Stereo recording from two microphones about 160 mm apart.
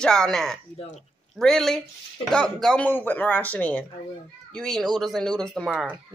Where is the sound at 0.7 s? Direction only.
35° left (ahead or behind).